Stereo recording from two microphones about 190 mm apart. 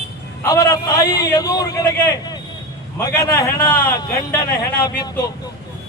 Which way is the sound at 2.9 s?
20° left (ahead or behind).